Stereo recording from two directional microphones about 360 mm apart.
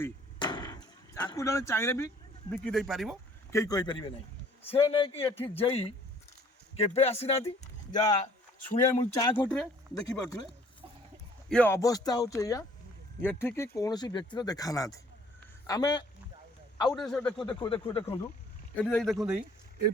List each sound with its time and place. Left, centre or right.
0.0 s a sound: centre
2.5 s speech: centre
8.9 s speech: centre
11.4 s speech: centre
17.3 s speech: centre
18.8 s speech: centre